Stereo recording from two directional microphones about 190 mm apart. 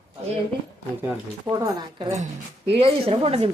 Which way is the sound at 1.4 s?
25° right (ahead or behind).